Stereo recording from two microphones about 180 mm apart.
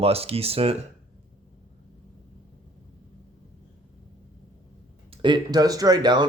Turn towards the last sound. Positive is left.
turn(degrees=-25)  # may be behind; listen again after turning